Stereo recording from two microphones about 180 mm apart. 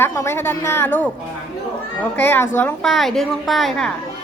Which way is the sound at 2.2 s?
10° left (ahead or behind).